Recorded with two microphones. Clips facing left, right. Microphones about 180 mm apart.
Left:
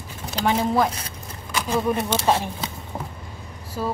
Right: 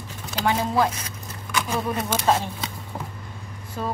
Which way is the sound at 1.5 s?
30° left (ahead or behind).